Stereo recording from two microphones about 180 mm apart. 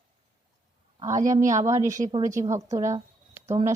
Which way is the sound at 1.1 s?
40° right (ahead or behind).